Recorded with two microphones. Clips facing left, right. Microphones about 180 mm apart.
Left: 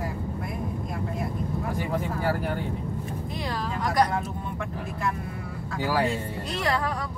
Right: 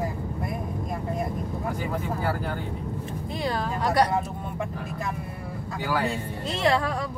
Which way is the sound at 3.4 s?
30° right (ahead or behind).